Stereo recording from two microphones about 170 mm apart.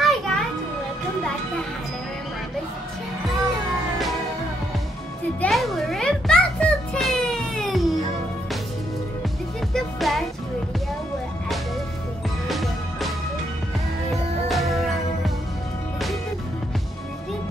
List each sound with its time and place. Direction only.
0.0 s children playing: centre (ahead or behind)
5.4 s music: centre (ahead or behind)
9.8 s music: centre (ahead or behind)
12.4 s music: centre (ahead or behind)
14.1 s music: centre (ahead or behind)